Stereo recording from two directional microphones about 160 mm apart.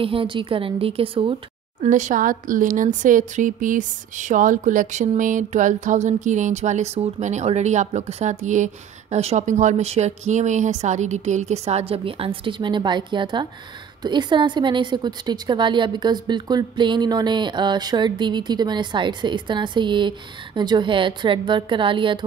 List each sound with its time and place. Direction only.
0.0 s speech: 35° right (ahead or behind)
1.8 s a woman's voice: 50° right (ahead or behind); by 22.2 s 30° right (ahead or behind)